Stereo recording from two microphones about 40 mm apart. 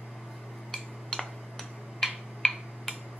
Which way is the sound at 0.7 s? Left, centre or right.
Centre.